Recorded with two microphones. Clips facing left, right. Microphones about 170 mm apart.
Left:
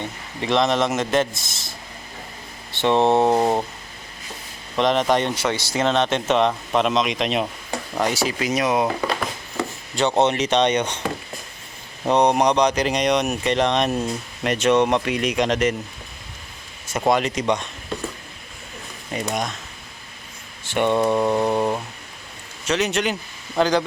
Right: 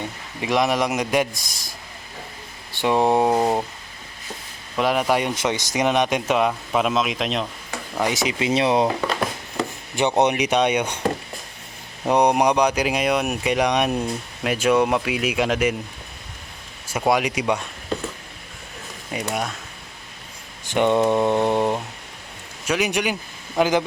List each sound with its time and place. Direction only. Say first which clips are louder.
0.0 s speech: left 1 dB; 10° right (ahead or behind)
2.8 s speech: left 1 dB; 10° right (ahead or behind)
3.3 s speech: left 1 dB; 5° left (ahead or behind)
4.8 s speech: left 1 dB; 5° right (ahead or behind)
8.1 s mantra: right 1 dB; 20° right (ahead or behind)
10.0 s speech: even; 15° right (ahead or behind)
12.0 s speech: even; 10° right (ahead or behind)
17.1 s speech: left 1 dB; 10° right (ahead or behind)
19.1 s speech: left 1 dB; 5° right (ahead or behind)
20.7 s mantra: right 1 dB; 15° right (ahead or behind)
22.6 s speech: left 1 dB; 10° right (ahead or behind)
23.6 s mantra: even; 20° right (ahead or behind)